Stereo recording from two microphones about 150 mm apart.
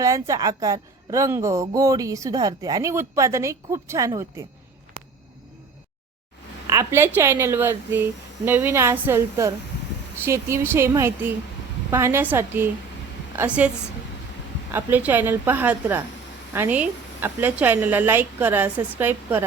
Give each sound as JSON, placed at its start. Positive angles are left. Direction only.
{"t": 0.0, "sound": "a woman's voice", "side_deg": -20}
{"t": 6.7, "sound": "a woman's voice", "side_deg": -20}
{"t": 14.7, "sound": "a woman's voice", "side_deg": -15}